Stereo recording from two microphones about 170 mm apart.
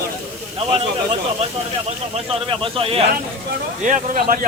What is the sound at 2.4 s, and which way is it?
Speech, 30° right (ahead or behind).